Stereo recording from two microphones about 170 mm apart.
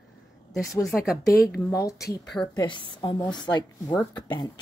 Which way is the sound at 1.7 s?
20° left (ahead or behind).